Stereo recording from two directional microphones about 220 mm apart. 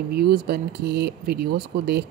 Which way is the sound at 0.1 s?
45° right (ahead or behind).